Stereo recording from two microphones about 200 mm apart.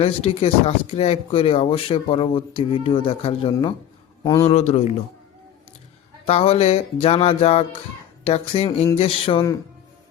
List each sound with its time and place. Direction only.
0.0 s a man's voice: 30° left (ahead or behind); by 4.4 s 15° left (ahead or behind)
4.4 s speech: 30° left (ahead or behind)
6.2 s speech: 30° left (ahead or behind)